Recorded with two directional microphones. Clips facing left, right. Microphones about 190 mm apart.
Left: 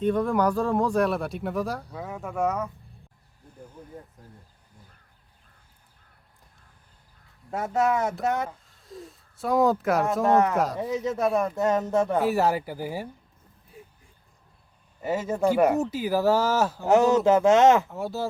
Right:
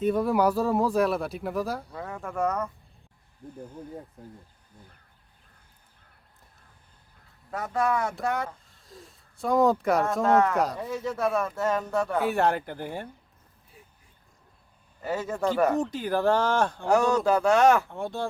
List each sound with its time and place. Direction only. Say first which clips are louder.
0.0 s speech: even; 5° right (ahead or behind)
7.5 s speech: left 2 dB; 25° left (ahead or behind)
8.4 s speech: left 2 dB; centre (ahead or behind)
10.2 s speech: left 1 dB; 20° left (ahead or behind)
10.5 s speech: left 1 dB; centre (ahead or behind)
10.8 s speech: left 3 dB; 20° left (ahead or behind)
12.2 s speech: left 1 dB; 5° left (ahead or behind)
15.0 s speech: left 3 dB; 20° left (ahead or behind)
16.9 s speech: left 4 dB; 20° left (ahead or behind)
17.8 s speech: left 1 dB; 5° left (ahead or behind)